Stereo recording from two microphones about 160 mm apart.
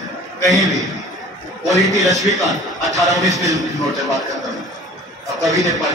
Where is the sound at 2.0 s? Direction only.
Centre (ahead or behind).